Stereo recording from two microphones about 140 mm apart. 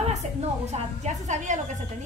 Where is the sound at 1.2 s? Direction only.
60° right (ahead or behind).